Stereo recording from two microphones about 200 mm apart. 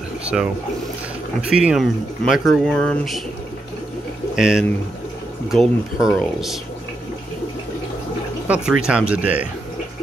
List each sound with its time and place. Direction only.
0.2 s a sound: 5° right (ahead or behind)
1.5 s speech: 5° right (ahead or behind)
4.4 s speech: 5° right (ahead or behind)
8.5 s speech: 5° right (ahead or behind)